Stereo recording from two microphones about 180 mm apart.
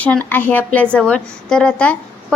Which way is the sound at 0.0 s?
10° left (ahead or behind).